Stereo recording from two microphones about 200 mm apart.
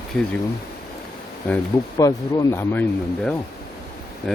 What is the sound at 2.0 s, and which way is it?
Speech, 15° left (ahead or behind).